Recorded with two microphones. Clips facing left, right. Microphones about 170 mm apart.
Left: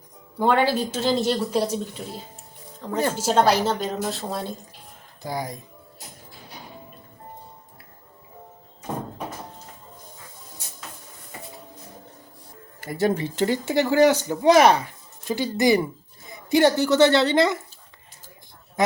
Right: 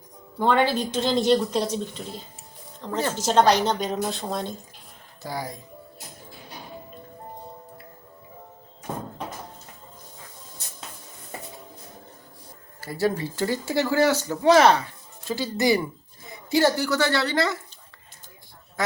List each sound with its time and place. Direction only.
0.3 s speech: 10° left (ahead or behind)
5.2 s speech: 15° left (ahead or behind)
12.8 s a woman's voice: 20° left (ahead or behind)